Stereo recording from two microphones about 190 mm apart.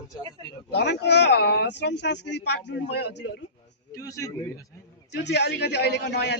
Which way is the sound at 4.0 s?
15° left (ahead or behind).